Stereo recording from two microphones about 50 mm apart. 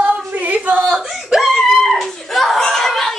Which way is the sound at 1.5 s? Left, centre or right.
Centre.